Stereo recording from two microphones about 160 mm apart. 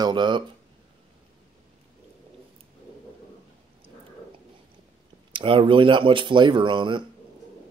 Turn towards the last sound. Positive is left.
turn(degrees=-30)  # may be behind; listen again after turning